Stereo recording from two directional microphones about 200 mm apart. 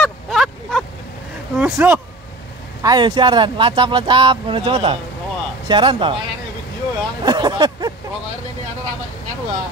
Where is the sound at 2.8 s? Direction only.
20° right (ahead or behind).